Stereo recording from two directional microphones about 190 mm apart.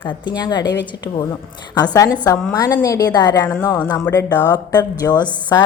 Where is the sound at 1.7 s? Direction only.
20° left (ahead or behind).